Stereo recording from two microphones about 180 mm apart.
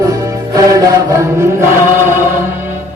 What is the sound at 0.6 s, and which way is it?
Chant, 20° right (ahead or behind).